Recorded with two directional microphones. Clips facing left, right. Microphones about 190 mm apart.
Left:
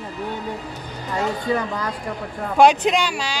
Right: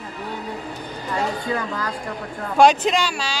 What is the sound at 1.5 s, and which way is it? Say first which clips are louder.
Speech: left 2 dB; 20° left (ahead or behind).